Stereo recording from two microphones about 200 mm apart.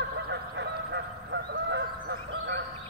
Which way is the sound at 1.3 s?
60° right (ahead or behind).